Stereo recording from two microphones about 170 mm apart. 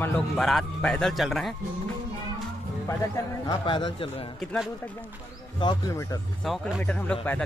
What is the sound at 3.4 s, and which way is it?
Speech, 30° left (ahead or behind).